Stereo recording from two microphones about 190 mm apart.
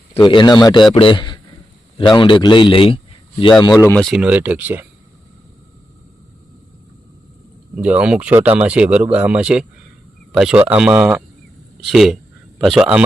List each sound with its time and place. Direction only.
0.1 s a man's voice: 25° left (ahead or behind)
3.9 s speech: centre (ahead or behind)
7.8 s a man's voice: 5° right (ahead or behind)